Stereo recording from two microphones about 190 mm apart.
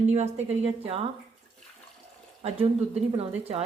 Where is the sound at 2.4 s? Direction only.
35° right (ahead or behind).